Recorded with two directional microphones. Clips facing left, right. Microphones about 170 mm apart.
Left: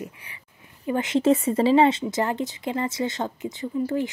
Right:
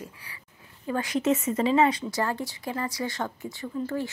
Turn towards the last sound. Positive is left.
turn(degrees=15)  # may be behind; listen again after turning